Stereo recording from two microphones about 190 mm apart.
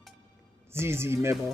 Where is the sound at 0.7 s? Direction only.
15° right (ahead or behind).